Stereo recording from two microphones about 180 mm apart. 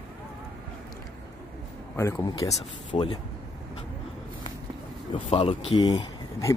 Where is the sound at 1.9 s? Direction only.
15° left (ahead or behind).